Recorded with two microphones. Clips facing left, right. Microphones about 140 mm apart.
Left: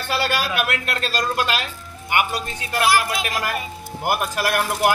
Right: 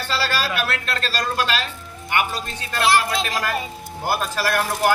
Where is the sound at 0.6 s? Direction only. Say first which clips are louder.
Left 1 dB; 15° left (ahead or behind).